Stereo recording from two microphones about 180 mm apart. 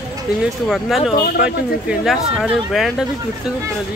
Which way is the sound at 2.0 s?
Centre (ahead or behind).